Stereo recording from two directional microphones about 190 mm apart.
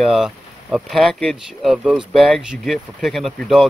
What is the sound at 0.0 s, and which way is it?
Speech, centre (ahead or behind).